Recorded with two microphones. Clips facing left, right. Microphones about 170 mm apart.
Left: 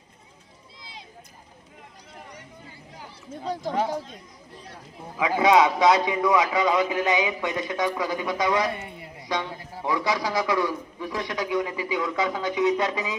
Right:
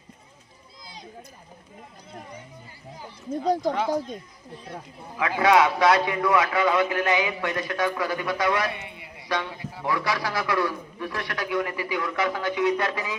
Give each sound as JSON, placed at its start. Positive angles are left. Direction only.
{"t": 3.4, "sound": "speech", "side_deg": -40}
{"t": 5.4, "sound": "a man's voice", "side_deg": 20}
{"t": 8.7, "sound": "a man's voice", "side_deg": 40}
{"t": 9.2, "sound": "a man's voice", "side_deg": 20}